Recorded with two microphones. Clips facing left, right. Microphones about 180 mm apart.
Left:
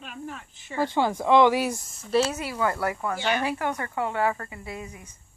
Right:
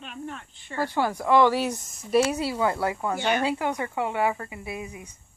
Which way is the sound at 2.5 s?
15° right (ahead or behind).